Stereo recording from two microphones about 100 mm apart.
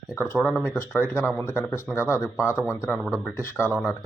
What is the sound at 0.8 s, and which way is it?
Speech, 25° left (ahead or behind).